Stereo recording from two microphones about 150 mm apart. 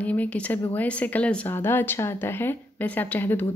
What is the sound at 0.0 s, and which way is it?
Speech, 10° left (ahead or behind).